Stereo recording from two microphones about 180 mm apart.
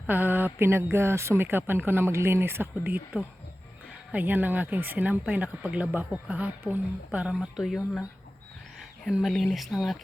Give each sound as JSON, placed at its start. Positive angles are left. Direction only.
{"t": 0.1, "sound": "speech", "side_deg": -10}
{"t": 9.0, "sound": "speech", "side_deg": 0}